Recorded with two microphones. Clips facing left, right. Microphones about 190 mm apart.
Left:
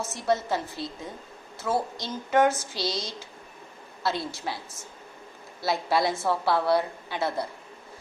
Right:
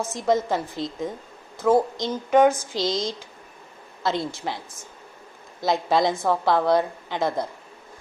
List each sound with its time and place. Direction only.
0.0 s a woman's voice: 15° right (ahead or behind)
5.5 s a woman's voice: 20° right (ahead or behind)